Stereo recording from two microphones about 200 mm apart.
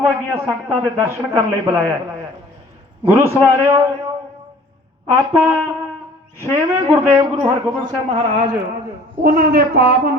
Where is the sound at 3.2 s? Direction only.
10° right (ahead or behind).